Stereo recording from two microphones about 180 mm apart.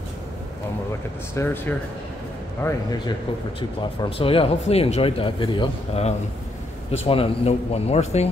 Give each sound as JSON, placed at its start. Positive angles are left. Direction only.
{"t": 1.3, "sound": "speech", "side_deg": 15}
{"t": 4.0, "sound": "speech", "side_deg": 30}